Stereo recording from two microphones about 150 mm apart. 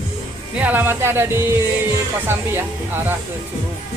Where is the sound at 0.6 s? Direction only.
10° right (ahead or behind).